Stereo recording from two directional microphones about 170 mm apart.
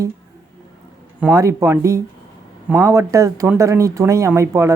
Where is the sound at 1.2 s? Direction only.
15° right (ahead or behind).